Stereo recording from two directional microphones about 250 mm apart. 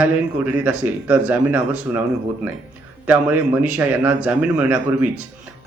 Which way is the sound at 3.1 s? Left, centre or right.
Centre.